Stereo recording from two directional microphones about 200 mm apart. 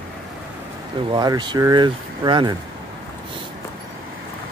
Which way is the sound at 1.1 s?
20° right (ahead or behind).